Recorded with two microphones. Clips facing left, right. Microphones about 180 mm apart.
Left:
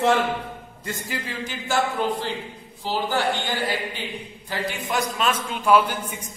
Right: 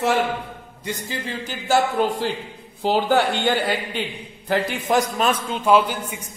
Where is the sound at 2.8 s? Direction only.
60° right (ahead or behind).